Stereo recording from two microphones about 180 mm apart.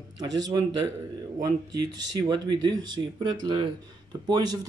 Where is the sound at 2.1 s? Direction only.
20° right (ahead or behind).